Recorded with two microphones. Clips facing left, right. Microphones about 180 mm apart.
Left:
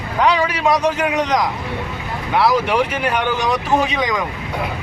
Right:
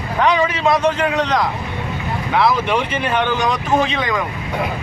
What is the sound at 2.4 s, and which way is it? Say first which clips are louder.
Speech: left 4 dB; 10° left (ahead or behind).